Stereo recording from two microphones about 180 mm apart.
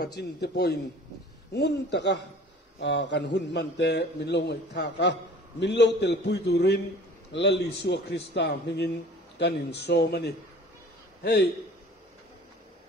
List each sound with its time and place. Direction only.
0.0 s a man's voice: 65° left (ahead or behind)